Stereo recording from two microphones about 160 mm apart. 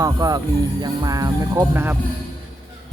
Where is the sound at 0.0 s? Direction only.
20° right (ahead or behind).